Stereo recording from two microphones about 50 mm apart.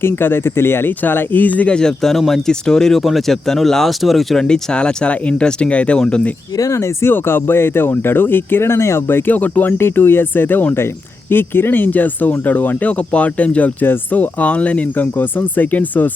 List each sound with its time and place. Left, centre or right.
0.0 s speech: left
1.7 s speech: centre
4.4 s speech: centre
6.7 s speech: left
7.1 s speech: left
9.0 s speech: left
9.3 s speech: left
9.7 s speech: left
11.3 s speech: left
13.8 s speech: left